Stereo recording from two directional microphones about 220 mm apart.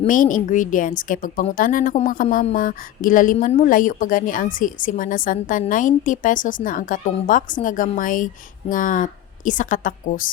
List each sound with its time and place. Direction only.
0.0 s a woman's voice: 35° left (ahead or behind)